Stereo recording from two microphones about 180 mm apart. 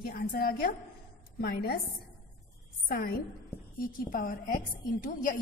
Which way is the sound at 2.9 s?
55° left (ahead or behind).